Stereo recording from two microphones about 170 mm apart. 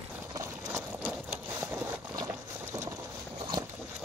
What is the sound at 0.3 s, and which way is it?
Vehicle, 15° right (ahead or behind).